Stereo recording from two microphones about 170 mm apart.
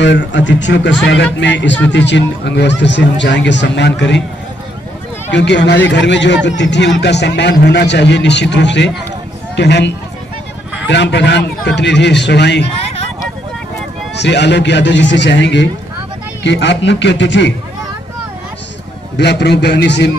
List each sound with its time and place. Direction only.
0.0 s speech: 90° left
5.3 s speech: 90° left
14.1 s speech: 90° left
19.1 s a man's voice: 80° left